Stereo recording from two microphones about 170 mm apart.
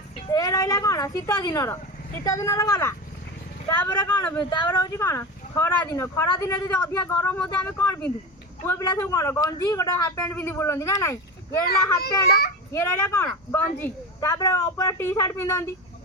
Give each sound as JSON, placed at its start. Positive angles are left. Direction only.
{"t": 0.3, "sound": "speech", "side_deg": 20}
{"t": 4.4, "sound": "speech", "side_deg": 25}